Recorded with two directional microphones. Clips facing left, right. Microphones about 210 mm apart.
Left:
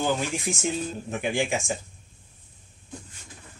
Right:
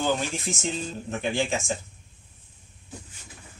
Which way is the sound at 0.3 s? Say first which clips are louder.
Left 2 dB; 15° left (ahead or behind).